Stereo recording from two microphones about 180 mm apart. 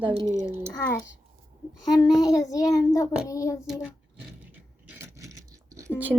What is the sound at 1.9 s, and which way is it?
A child's voice, 20° left (ahead or behind).